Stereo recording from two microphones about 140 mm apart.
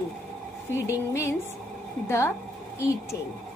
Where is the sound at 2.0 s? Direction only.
20° left (ahead or behind).